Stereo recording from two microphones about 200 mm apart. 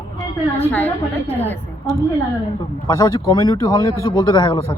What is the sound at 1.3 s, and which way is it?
Speech, 10° left (ahead or behind).